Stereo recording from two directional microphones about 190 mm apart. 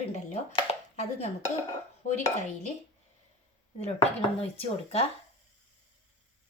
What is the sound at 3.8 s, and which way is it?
Speech, 30° left (ahead or behind).